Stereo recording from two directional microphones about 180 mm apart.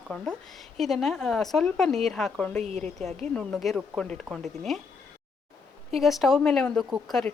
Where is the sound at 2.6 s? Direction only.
35° right (ahead or behind).